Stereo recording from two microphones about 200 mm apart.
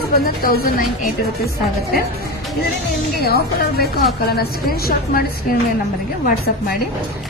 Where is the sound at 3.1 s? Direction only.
50° left (ahead or behind).